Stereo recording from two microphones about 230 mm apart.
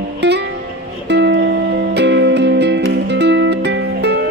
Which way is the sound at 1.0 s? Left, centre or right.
Right.